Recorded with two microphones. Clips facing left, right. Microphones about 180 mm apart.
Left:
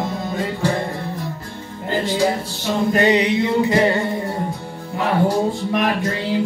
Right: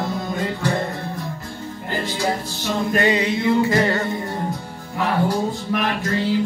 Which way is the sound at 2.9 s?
20° left (ahead or behind).